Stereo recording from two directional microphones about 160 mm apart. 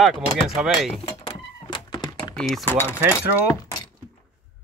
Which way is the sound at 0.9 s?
30° left (ahead or behind).